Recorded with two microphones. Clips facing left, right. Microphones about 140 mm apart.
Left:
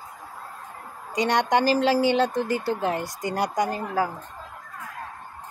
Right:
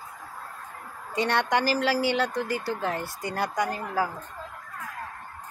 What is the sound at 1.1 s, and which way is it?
A woman's voice, 15° left (ahead or behind).